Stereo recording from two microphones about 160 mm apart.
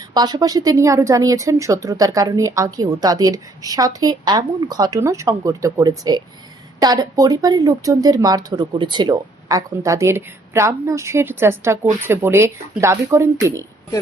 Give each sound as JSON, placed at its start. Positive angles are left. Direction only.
{"t": 0.1, "sound": "speech", "side_deg": -25}